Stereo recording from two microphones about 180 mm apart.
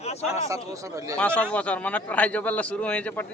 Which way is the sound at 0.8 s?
15° right (ahead or behind).